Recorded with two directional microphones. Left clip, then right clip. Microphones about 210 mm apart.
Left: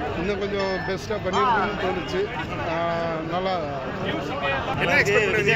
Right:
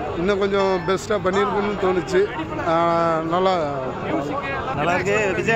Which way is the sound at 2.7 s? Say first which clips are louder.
Right 8 dB; 55° right (ahead or behind).